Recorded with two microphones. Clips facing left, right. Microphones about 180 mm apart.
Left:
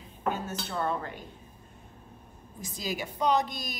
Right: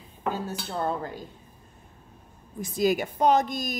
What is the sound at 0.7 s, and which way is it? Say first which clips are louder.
Cutlery: right 2 dB; 35° right (ahead or behind).